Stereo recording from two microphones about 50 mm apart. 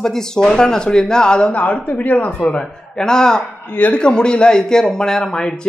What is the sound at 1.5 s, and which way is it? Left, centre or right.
Speech, left.